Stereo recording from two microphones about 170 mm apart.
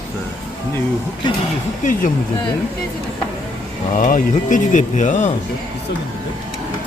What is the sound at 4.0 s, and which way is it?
Speech, 50° left (ahead or behind).